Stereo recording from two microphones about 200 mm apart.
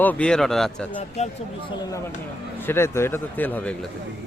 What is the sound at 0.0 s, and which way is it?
Speech, 5° left (ahead or behind).